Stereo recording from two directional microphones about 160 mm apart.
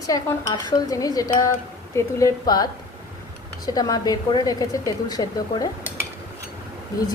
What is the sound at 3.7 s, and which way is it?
Speech, 25° left (ahead or behind).